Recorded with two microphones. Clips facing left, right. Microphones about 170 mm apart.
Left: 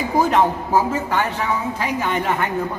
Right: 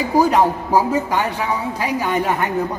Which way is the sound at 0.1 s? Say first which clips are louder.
Right 2 dB; 10° right (ahead or behind).